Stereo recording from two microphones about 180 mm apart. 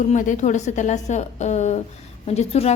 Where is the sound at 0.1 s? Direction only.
45° left (ahead or behind).